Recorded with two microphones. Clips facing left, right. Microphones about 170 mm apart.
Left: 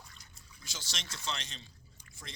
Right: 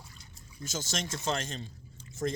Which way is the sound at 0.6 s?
45° right (ahead or behind).